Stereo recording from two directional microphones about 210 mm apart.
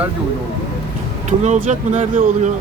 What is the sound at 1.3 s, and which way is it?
Speech, 35° right (ahead or behind).